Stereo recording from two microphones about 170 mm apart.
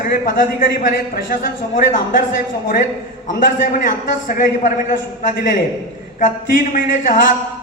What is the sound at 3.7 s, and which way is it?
A woman's voice, 55° left (ahead or behind).